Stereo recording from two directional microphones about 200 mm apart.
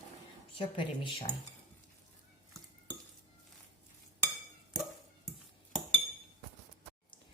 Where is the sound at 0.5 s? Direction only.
25° left (ahead or behind).